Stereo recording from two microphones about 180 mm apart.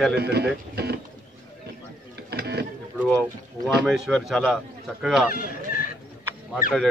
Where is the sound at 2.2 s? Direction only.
65° right (ahead or behind).